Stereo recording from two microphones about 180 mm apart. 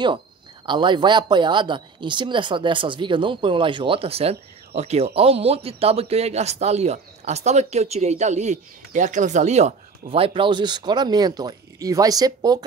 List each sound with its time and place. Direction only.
0.7 s speech: 25° right (ahead or behind)